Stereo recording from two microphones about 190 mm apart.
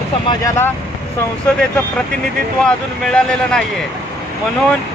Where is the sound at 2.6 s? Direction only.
5° left (ahead or behind).